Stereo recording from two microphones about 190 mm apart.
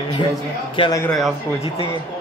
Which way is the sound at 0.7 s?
25° left (ahead or behind).